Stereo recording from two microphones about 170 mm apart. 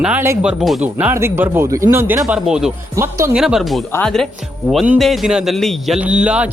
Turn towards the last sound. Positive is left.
turn(degrees=-5)  # may be behind; listen again after turning